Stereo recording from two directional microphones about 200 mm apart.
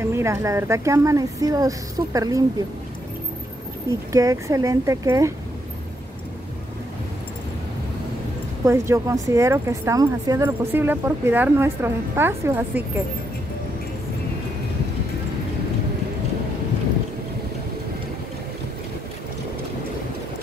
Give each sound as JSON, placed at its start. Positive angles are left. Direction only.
{"t": 0.0, "sound": "speech", "side_deg": -15}
{"t": 4.1, "sound": "speech", "side_deg": -15}
{"t": 8.6, "sound": "speech", "side_deg": -15}